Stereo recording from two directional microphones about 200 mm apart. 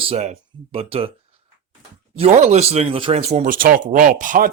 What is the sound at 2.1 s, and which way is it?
Speech, 35° right (ahead or behind).